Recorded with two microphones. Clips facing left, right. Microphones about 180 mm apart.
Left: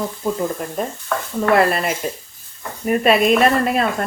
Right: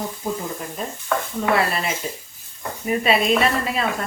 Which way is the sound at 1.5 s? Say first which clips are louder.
Left 8 dB; 50° left (ahead or behind).